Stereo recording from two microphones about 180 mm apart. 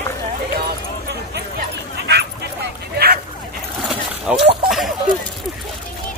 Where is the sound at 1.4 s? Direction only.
65° right (ahead or behind).